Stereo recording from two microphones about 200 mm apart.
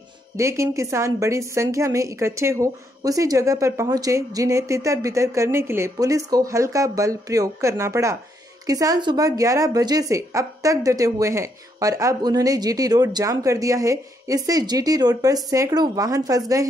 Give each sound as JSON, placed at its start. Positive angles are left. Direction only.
{"t": 0.4, "sound": "speech", "side_deg": -15}